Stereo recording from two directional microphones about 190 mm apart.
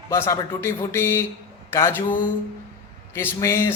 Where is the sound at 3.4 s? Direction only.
15° left (ahead or behind).